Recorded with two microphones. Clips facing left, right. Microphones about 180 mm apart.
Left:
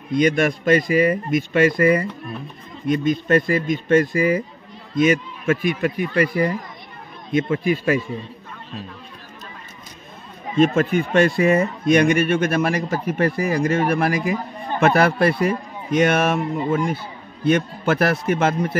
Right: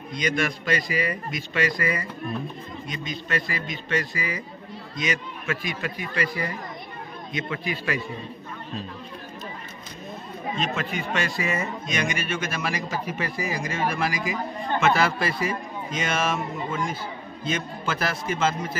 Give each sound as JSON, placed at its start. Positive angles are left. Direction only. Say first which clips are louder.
{"t": 0.1, "sound": "a man's voice", "louder": "left 9 dB", "side_deg": 55}
{"t": 7.6, "sound": "speech", "louder": "left 9 dB", "side_deg": 45}
{"t": 10.6, "sound": "a man's voice", "louder": "left 14 dB", "side_deg": 50}